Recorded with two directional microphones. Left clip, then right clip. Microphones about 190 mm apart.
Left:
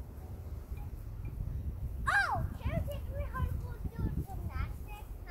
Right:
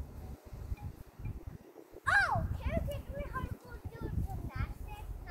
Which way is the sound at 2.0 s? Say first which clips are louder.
Right 1 dB; 15° right (ahead or behind).